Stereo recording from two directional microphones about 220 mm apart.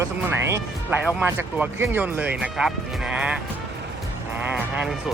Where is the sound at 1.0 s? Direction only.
5° right (ahead or behind).